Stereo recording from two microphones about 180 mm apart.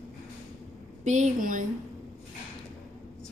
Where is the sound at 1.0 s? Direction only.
40° right (ahead or behind).